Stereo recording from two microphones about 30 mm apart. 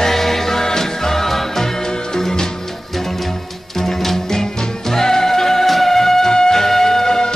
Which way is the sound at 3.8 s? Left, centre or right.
Centre.